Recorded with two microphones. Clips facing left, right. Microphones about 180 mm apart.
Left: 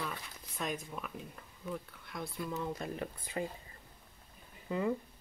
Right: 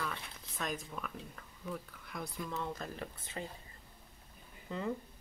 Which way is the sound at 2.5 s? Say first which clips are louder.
Left 4 dB; 10° left (ahead or behind).